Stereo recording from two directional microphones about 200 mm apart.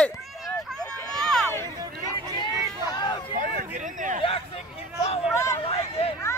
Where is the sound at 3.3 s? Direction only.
45° right (ahead or behind).